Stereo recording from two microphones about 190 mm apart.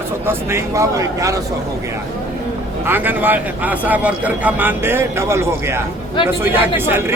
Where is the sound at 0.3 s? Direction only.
15° right (ahead or behind).